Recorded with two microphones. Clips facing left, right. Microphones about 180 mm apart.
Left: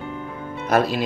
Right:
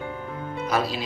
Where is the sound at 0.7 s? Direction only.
50° left (ahead or behind).